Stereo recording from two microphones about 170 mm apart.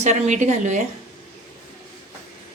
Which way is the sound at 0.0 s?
45° right (ahead or behind).